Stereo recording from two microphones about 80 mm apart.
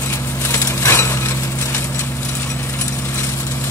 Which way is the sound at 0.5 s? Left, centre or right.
Left.